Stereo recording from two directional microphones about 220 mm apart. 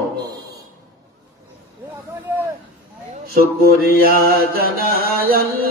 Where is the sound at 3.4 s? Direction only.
45° right (ahead or behind).